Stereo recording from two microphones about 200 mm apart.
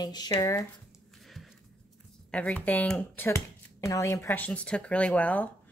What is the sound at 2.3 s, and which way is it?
Speech, 5° left (ahead or behind).